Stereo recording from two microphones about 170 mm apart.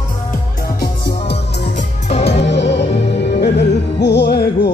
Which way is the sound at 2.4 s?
90° left.